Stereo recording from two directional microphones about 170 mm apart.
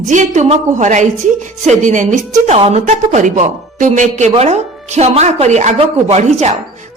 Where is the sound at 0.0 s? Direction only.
45° right (ahead or behind).